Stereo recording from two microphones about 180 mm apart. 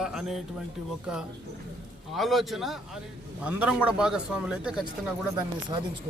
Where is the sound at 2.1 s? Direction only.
Centre (ahead or behind).